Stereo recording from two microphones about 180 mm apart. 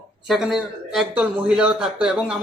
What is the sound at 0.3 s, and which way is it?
Speech, centre (ahead or behind).